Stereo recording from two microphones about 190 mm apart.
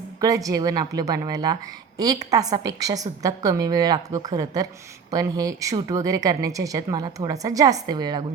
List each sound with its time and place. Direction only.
0.2 s a woman's voice: 20° right (ahead or behind)